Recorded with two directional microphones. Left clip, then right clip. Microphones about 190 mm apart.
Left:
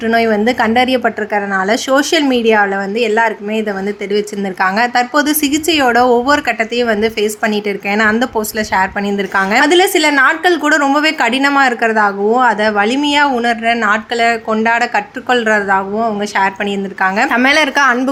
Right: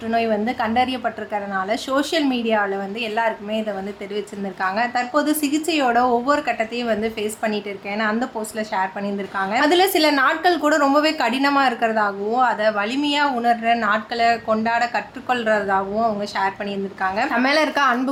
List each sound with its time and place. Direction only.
0.1 s a woman's voice: 30° left (ahead or behind)
4.6 s a woman's voice: 35° left (ahead or behind)